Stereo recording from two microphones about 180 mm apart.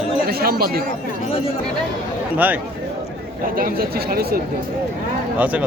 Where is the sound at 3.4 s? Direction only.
55° right (ahead or behind).